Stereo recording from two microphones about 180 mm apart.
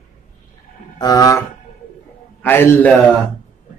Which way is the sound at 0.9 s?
20° left (ahead or behind).